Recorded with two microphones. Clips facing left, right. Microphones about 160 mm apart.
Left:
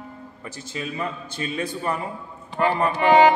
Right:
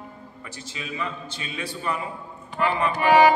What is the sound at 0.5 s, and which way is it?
A man's voice, 45° left (ahead or behind).